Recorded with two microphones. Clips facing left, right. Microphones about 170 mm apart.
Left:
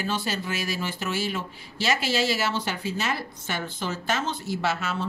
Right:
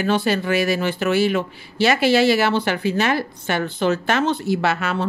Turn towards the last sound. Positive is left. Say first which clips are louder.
# right 7 dB
turn(degrees=-65)  # may be behind; listen again after turning